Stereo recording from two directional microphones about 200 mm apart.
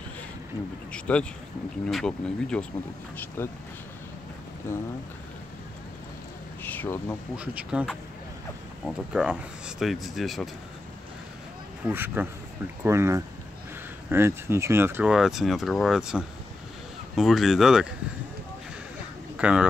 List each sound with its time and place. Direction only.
0.9 s speech: 5° left (ahead or behind)
4.7 s speech: 10° left (ahead or behind)
6.6 s speech: 10° left (ahead or behind)
7.3 s speech: 5° right (ahead or behind)
11.8 s speech: 10° right (ahead or behind)
19.3 s a sound: 5° right (ahead or behind)